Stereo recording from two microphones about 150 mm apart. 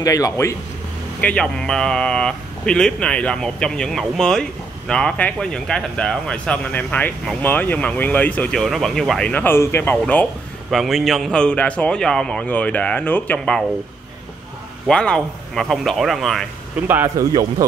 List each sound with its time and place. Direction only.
0.0 s speech: 25° left (ahead or behind)
1.2 s speech: 5° left (ahead or behind)
10.7 s a man's voice: centre (ahead or behind)
14.9 s speech: 5° left (ahead or behind)
16.8 s a man's voice: 15° right (ahead or behind)